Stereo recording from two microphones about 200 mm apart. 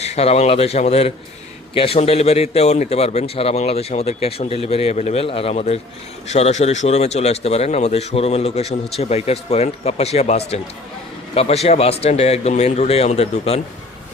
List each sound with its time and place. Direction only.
0.0 s speech: 30° left (ahead or behind)